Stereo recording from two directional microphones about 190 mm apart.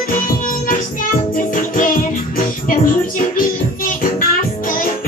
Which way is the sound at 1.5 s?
45° left (ahead or behind).